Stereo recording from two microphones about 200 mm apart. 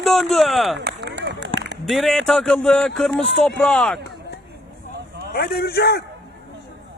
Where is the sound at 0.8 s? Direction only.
60° right (ahead or behind).